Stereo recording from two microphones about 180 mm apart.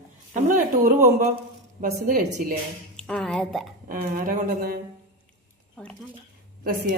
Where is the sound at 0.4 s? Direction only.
45° right (ahead or behind).